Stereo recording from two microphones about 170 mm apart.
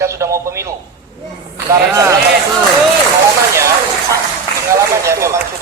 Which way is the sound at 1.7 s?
15° right (ahead or behind).